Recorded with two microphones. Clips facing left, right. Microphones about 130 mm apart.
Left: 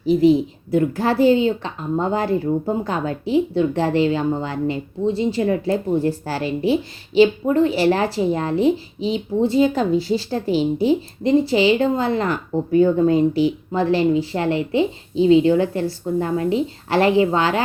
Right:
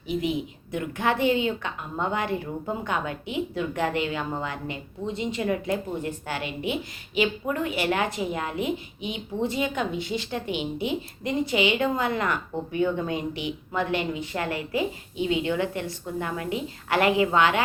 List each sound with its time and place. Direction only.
0.0 s a woman's voice: 35° left (ahead or behind)